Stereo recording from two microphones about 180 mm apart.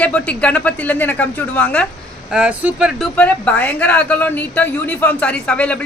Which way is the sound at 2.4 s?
5° right (ahead or behind).